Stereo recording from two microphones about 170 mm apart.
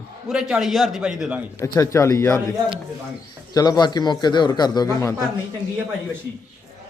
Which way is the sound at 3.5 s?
20° left (ahead or behind).